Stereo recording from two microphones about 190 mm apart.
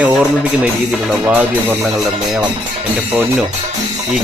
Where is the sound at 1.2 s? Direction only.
5° right (ahead or behind).